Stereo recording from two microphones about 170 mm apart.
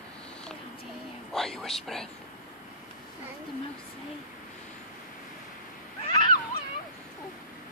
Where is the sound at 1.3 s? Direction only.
Centre (ahead or behind).